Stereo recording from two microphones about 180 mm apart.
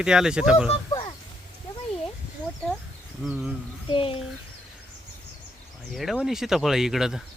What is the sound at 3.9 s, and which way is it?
Speech, 30° left (ahead or behind).